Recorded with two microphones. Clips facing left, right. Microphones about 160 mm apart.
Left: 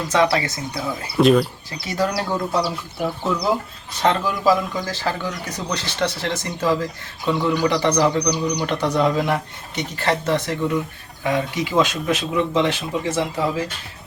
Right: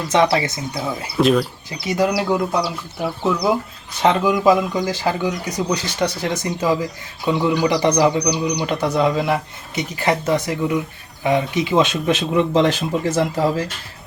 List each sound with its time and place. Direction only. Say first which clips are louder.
0.1 s speech: right 2 dB; 20° right (ahead or behind)
1.1 s speech: left 1 dB; centre (ahead or behind)
1.8 s speech: right 4 dB; 15° right (ahead or behind)
4.0 s speech: right 4 dB; 15° right (ahead or behind); by 13.5 s 40° right (ahead or behind)